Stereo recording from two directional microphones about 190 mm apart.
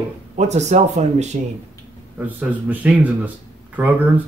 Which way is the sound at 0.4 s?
35° right (ahead or behind).